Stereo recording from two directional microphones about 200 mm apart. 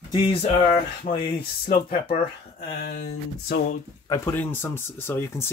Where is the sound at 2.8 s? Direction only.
50° left (ahead or behind).